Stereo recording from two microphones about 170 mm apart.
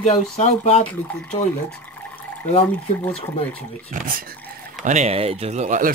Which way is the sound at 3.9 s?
55° right (ahead or behind).